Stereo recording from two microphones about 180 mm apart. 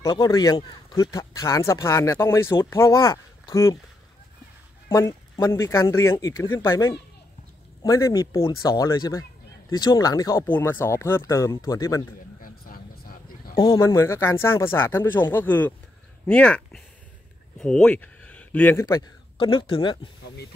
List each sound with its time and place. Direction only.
0.0 s speech: 20° left (ahead or behind)
4.8 s speech: 15° left (ahead or behind)
12.4 s a sound: 55° left (ahead or behind)
13.6 s a man's voice: 20° left (ahead or behind)